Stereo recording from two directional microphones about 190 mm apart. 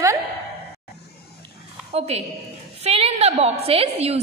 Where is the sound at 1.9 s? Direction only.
35° right (ahead or behind).